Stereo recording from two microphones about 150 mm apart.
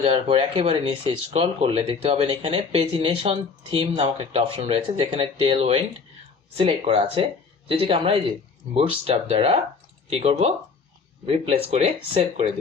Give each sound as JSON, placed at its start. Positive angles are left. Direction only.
{"t": 0.0, "sound": "speech", "side_deg": -45}